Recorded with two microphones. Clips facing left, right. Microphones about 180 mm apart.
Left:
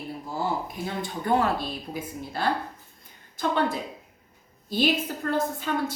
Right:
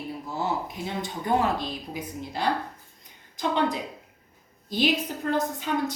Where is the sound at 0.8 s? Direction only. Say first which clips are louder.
Left 1 dB; 20° right (ahead or behind).